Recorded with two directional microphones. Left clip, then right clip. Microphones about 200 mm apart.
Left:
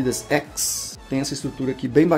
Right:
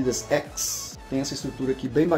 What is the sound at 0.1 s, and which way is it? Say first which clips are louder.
Speech: left 2 dB; 50° left (ahead or behind).